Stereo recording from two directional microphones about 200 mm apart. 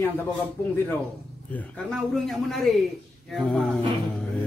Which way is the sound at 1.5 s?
5° left (ahead or behind).